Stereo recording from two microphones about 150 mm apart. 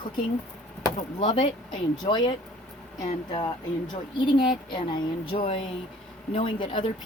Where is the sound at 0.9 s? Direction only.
35° left (ahead or behind).